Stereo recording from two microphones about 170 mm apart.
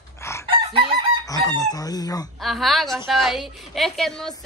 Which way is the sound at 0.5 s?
30° right (ahead or behind).